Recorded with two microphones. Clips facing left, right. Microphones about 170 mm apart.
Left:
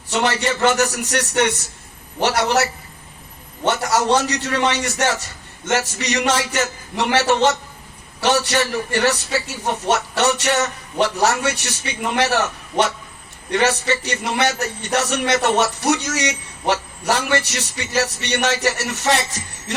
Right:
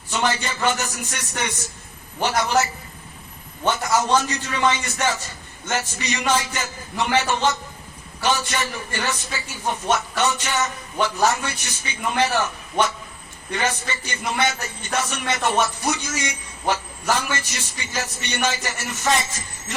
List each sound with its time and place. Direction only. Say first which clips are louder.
0.1 s a man's voice: left 4 dB; 75° left (ahead or behind)
3.7 s a man's voice: left 2 dB; 75° left (ahead or behind)
13.5 s a man's voice: left 7 dB; 75° left (ahead or behind)